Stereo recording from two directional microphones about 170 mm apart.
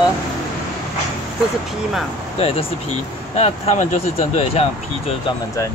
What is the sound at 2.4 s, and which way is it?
Speech, 40° left (ahead or behind).